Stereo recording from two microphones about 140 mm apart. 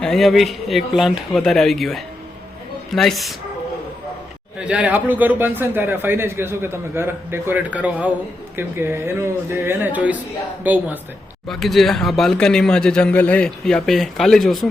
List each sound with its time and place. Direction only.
0.0 s speech: centre (ahead or behind)
4.6 s speech: 10° right (ahead or behind)
11.4 s speech: centre (ahead or behind)